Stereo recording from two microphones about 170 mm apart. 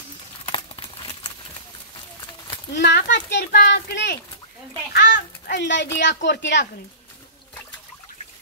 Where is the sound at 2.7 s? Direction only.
85° left.